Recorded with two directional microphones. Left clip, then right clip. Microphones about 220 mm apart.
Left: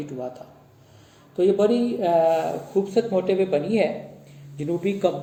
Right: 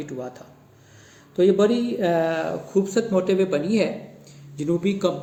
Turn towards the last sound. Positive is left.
turn(degrees=-55)  # may be behind; listen again after turning